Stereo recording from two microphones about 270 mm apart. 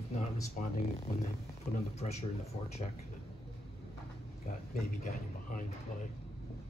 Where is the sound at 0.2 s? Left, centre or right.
Left.